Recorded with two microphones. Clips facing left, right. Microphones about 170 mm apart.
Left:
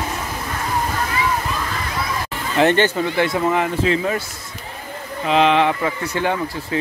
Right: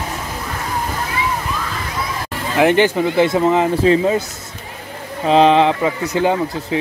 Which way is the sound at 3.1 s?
25° right (ahead or behind).